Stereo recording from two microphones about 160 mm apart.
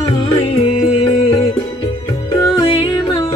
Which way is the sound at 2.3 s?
20° left (ahead or behind).